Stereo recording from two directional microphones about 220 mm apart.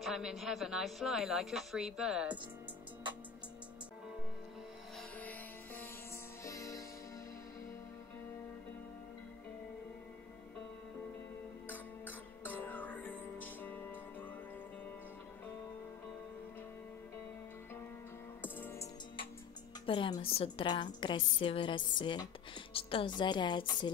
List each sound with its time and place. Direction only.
0.0 s speech: centre (ahead or behind)
6.4 s music: 15° left (ahead or behind)
12.4 s music: 10° left (ahead or behind)
18.4 s music: 10° left (ahead or behind)
19.9 s a woman's voice: 20° left (ahead or behind)